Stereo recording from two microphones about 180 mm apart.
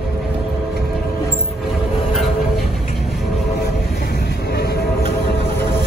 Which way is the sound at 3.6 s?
60° left (ahead or behind).